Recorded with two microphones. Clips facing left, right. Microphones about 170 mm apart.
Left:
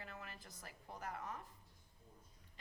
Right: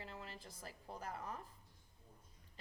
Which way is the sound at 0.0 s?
25° right (ahead or behind).